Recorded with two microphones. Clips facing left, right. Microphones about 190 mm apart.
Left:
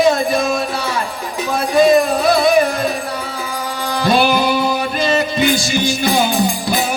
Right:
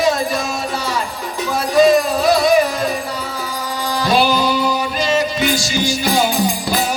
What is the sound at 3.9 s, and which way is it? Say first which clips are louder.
Music: left 1 dB; 55° left (ahead or behind).